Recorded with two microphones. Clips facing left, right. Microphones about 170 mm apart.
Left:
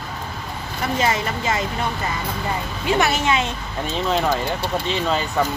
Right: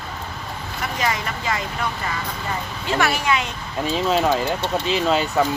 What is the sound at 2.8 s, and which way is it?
Speech, 20° left (ahead or behind).